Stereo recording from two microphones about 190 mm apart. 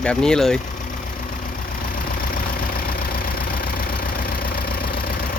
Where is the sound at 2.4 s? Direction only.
50° left (ahead or behind).